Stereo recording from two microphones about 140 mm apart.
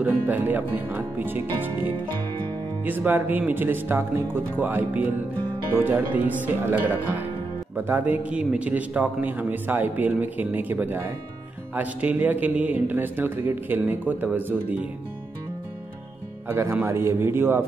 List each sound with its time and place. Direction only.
0.0 s a man's voice: 15° right (ahead or behind)
16.4 s a man's voice: 15° right (ahead or behind)